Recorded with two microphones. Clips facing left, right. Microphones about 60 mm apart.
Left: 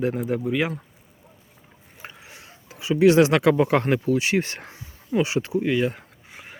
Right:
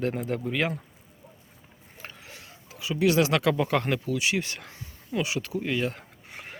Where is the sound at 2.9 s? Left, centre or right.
Left.